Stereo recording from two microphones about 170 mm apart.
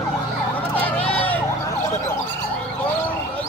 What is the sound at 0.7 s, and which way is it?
Emergency vehicle, 10° left (ahead or behind).